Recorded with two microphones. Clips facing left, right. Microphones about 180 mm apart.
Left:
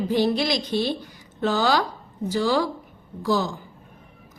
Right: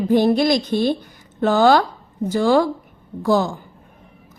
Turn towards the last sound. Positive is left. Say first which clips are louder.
# right 5 dB
turn(degrees=-50)  # may be behind; listen again after turning